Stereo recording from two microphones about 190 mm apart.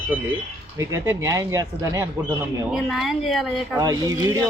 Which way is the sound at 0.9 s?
15° right (ahead or behind).